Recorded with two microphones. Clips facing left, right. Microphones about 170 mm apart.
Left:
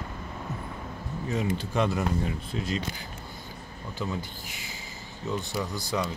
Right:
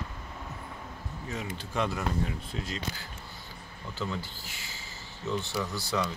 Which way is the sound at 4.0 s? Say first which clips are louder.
Left 2 dB; 15° left (ahead or behind).